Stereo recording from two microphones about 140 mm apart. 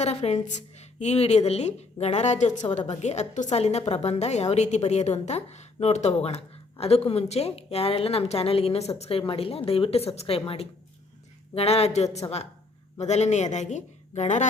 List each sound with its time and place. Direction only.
0.0 s a woman's voice: 50° left (ahead or behind)